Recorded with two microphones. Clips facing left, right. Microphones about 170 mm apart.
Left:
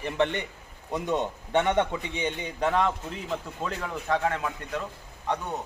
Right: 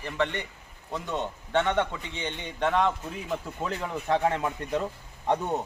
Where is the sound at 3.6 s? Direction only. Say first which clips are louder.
Right 1 dB; 15° right (ahead or behind).